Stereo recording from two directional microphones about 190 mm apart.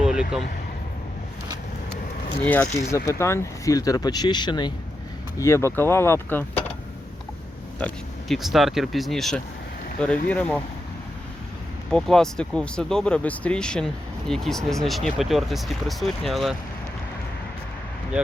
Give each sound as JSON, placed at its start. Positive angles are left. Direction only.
{"t": 0.0, "sound": "a sound", "side_deg": -5}
{"t": 2.4, "sound": "speech", "side_deg": 10}
{"t": 7.8, "sound": "speech", "side_deg": 5}
{"t": 11.9, "sound": "speech", "side_deg": 5}